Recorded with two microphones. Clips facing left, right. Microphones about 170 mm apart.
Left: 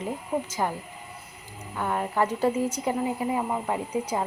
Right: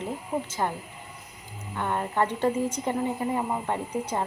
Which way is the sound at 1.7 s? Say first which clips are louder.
Left 1 dB; 5° left (ahead or behind).